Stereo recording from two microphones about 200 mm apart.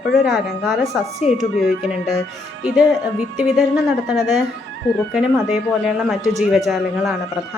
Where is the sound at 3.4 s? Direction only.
5° right (ahead or behind).